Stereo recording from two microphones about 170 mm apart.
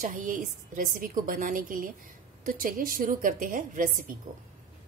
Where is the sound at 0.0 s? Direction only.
50° right (ahead or behind).